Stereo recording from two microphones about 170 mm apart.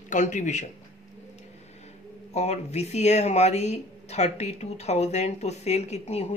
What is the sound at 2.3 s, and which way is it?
Speech, 40° left (ahead or behind).